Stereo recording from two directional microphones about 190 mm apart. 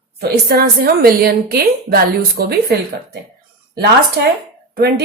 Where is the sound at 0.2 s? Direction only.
55° right (ahead or behind).